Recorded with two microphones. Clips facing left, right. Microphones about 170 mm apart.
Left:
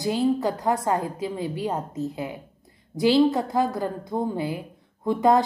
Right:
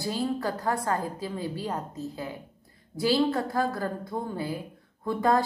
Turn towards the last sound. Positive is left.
turn(degrees=20)  # may be behind; listen again after turning